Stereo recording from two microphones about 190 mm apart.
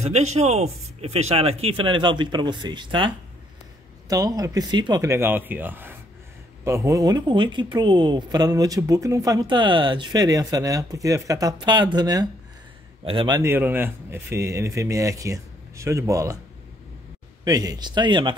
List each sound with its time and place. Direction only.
0.0 s speech: 35° right (ahead or behind)
4.1 s speech: 20° right (ahead or behind)
13.4 s speech: 10° right (ahead or behind)
17.5 s speech: 20° right (ahead or behind)